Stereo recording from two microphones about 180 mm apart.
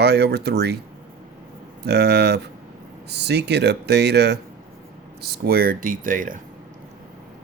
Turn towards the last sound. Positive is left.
turn(degrees=-50)  # may be behind; listen again after turning